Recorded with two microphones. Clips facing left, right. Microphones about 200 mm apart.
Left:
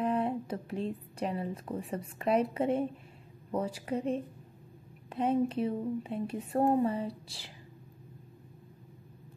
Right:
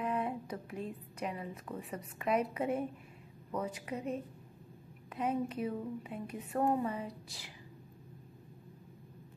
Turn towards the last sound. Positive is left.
turn(degrees=30)  # may be behind; listen again after turning